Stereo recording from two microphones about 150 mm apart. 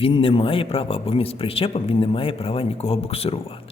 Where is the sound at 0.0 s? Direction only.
35° left (ahead or behind).